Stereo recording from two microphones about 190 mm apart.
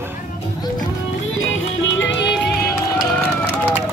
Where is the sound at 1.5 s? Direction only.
85° left.